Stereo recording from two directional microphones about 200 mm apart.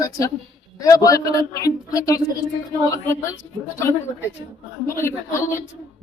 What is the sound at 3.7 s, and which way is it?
Speech, 15° left (ahead or behind).